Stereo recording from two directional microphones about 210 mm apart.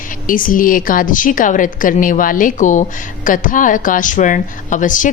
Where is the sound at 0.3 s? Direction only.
40° left (ahead or behind).